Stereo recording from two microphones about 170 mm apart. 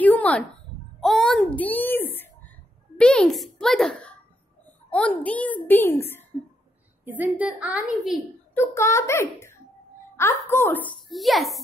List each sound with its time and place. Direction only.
0.0 s a sound: 10° left (ahead or behind)
1.0 s a child's voice: centre (ahead or behind)
5.2 s a child's voice: 10° left (ahead or behind)
7.1 s a woman's voice: 10° right (ahead or behind)
8.5 s a child's voice: 15° left (ahead or behind); by 11.6 s centre (ahead or behind)